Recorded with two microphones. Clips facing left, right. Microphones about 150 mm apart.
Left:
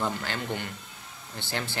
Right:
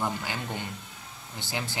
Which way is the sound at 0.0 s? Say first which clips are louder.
Left 1 dB; 15° right (ahead or behind).